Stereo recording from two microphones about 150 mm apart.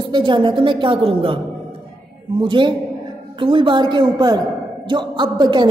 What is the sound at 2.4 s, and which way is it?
A woman's voice, 35° right (ahead or behind).